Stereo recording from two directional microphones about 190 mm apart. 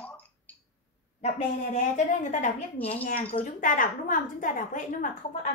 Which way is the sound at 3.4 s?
45° left (ahead or behind).